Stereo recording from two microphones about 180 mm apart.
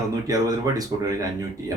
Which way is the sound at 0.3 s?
20° right (ahead or behind).